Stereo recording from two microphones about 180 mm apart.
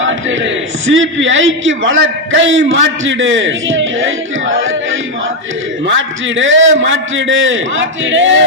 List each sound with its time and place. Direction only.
0.0 s a man's voice: 90° right